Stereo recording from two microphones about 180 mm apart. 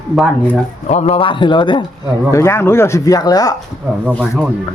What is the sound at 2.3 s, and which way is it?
Speech, 15° left (ahead or behind).